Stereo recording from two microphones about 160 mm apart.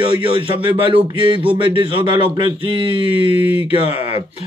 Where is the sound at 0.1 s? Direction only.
35° right (ahead or behind).